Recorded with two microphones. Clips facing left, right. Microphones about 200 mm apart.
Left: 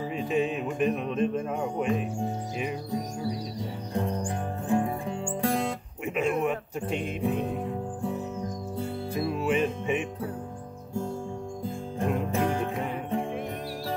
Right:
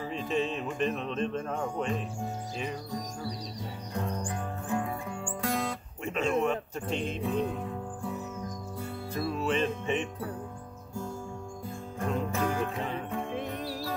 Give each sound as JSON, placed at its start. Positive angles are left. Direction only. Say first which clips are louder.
{"t": 0.1, "sound": "speech", "louder": "left 3 dB", "side_deg": 10}
{"t": 3.9, "sound": "music", "louder": "left 4 dB", "side_deg": 25}
{"t": 6.0, "sound": "speech", "louder": "left 1 dB", "side_deg": 15}
{"t": 9.1, "sound": "music", "louder": "left 3 dB", "side_deg": 15}
{"t": 12.0, "sound": "music", "louder": "left 3 dB", "side_deg": 25}